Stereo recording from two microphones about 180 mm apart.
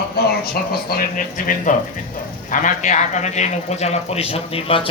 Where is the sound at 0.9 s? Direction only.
50° left (ahead or behind).